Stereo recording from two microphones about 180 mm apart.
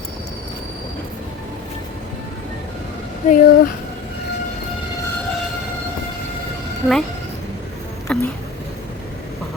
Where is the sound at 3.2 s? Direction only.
45° left (ahead or behind).